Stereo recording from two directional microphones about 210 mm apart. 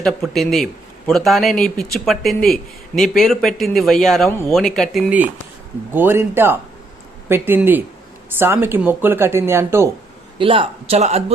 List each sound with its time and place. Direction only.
0.0 s a man's voice: centre (ahead or behind)
4.3 s a man's voice: 10° left (ahead or behind); by 9.9 s 10° right (ahead or behind)
10.3 s a man's voice: 25° right (ahead or behind)